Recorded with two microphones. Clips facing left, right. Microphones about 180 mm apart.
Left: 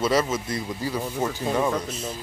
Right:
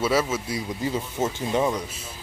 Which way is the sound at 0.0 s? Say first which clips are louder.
Left 1 dB; 5° right (ahead or behind).